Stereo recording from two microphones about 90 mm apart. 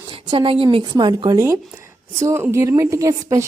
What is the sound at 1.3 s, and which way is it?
A woman's voice, 35° right (ahead or behind).